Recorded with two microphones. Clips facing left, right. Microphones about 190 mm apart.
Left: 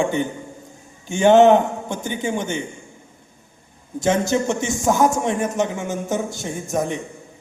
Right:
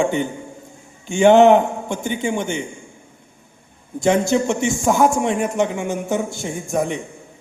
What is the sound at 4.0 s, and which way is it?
A man's voice, 15° right (ahead or behind).